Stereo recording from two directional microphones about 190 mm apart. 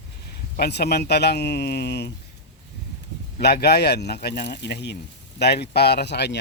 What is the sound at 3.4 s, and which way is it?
Speech, 60° left (ahead or behind).